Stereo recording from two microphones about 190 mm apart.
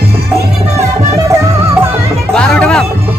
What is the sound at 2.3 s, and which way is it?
Music, 5° left (ahead or behind).